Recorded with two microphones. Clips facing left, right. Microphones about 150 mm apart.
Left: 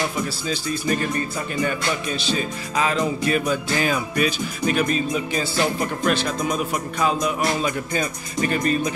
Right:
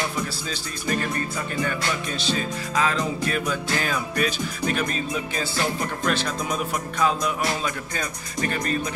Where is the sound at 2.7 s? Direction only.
10° left (ahead or behind).